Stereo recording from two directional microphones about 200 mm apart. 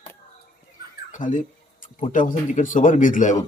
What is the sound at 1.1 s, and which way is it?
Speech, 40° left (ahead or behind).